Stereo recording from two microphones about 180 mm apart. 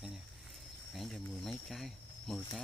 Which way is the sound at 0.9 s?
Centre (ahead or behind).